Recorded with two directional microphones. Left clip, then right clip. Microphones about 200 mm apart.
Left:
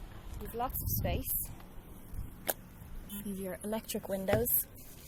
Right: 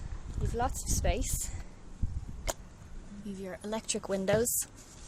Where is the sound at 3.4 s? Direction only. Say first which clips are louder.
Right 2 dB; centre (ahead or behind).